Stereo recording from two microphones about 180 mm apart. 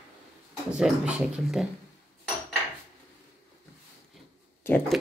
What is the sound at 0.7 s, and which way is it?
Speech, 5° right (ahead or behind).